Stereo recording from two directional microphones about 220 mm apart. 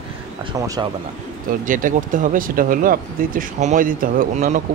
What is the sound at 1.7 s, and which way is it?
A man's voice, 35° right (ahead or behind).